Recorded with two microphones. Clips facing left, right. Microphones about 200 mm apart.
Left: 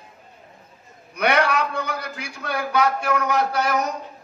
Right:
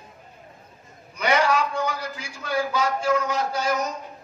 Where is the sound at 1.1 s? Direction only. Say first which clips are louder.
Left 1 dB; 60° left (ahead or behind).